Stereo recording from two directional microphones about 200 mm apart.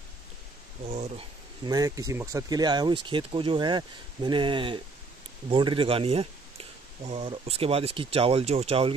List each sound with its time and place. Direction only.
0.8 s speech: 30° right (ahead or behind)